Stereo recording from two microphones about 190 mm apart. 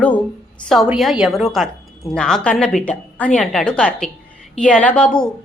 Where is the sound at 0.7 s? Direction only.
Centre (ahead or behind).